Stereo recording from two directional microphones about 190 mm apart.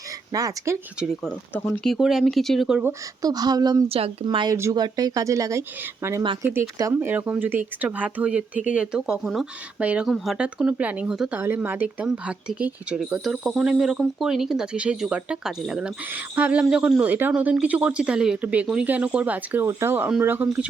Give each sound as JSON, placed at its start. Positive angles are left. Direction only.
{"t": 0.3, "sound": "speech", "side_deg": -15}
{"t": 0.9, "sound": "speech", "side_deg": 0}
{"t": 3.2, "sound": "speech", "side_deg": -20}